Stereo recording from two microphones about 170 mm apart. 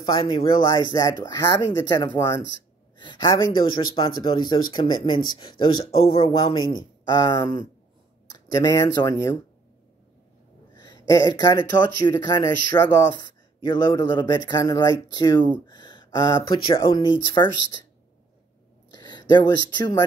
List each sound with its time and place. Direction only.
0.0 s speech: 25° left (ahead or behind)
10.7 s a sound: 25° left (ahead or behind)
11.1 s speech: 20° left (ahead or behind)
18.9 s speech: 25° left (ahead or behind)